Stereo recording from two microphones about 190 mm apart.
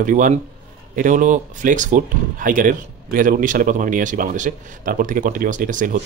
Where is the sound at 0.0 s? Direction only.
40° right (ahead or behind).